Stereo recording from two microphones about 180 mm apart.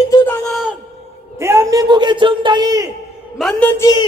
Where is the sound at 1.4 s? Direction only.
15° right (ahead or behind).